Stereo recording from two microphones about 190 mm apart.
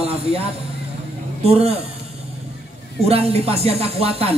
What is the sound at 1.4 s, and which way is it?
Speech, 30° right (ahead or behind).